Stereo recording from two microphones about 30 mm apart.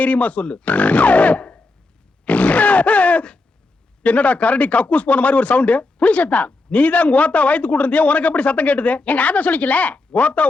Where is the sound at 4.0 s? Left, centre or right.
Left.